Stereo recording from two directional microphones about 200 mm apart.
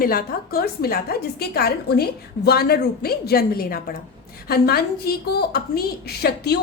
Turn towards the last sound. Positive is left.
turn(degrees=55)  # may be behind; listen again after turning